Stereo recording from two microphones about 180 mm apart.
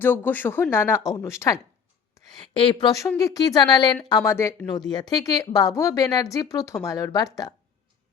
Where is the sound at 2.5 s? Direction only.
30° left (ahead or behind).